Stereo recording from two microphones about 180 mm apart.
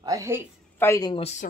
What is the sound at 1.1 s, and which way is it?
Speech, 35° left (ahead or behind).